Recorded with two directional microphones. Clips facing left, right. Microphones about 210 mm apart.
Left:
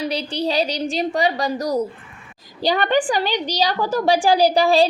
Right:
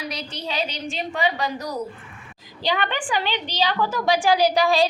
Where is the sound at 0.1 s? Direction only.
30° left (ahead or behind).